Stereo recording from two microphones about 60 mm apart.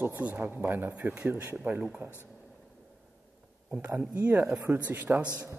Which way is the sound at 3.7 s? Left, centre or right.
Right.